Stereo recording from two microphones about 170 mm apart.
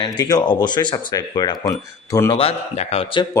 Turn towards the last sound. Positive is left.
turn(degrees=30)  # may be behind; listen again after turning